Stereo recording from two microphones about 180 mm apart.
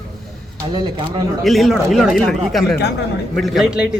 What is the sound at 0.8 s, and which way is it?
Speech, 25° right (ahead or behind).